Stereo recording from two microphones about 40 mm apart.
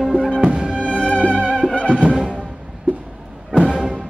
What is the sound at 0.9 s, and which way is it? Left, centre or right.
Music, left.